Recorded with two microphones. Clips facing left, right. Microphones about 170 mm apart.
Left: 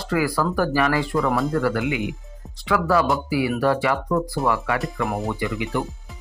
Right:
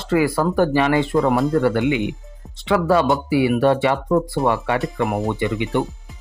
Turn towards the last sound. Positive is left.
turn(degrees=-20)  # may be behind; listen again after turning